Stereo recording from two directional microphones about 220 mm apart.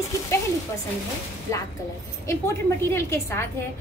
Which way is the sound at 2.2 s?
10° left (ahead or behind).